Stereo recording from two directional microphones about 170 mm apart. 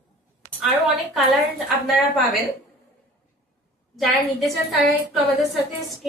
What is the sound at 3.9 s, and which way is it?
Speech, centre (ahead or behind).